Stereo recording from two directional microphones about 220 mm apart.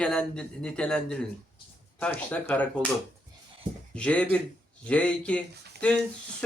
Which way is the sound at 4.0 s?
5° left (ahead or behind).